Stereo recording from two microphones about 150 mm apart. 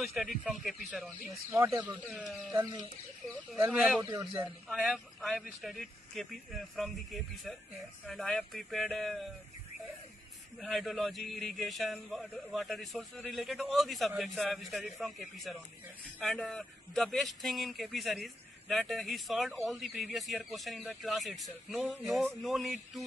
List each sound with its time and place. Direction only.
0.0 s speech: centre (ahead or behind)
1.5 s speech: 15° right (ahead or behind)
2.0 s speech: centre (ahead or behind)
2.5 s speech: 25° right (ahead or behind)
3.5 s speech: 10° right (ahead or behind)
10.6 s speech: centre (ahead or behind)